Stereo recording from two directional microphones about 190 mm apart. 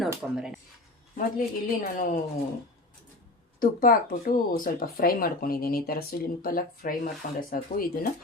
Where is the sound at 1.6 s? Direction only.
45° left (ahead or behind).